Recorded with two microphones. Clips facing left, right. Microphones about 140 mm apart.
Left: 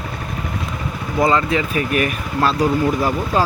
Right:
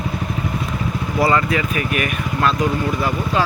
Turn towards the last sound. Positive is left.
turn(degrees=35)  # may be behind; listen again after turning